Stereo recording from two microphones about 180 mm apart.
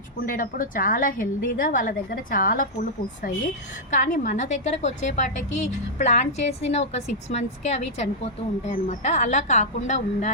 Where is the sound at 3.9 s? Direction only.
45° left (ahead or behind).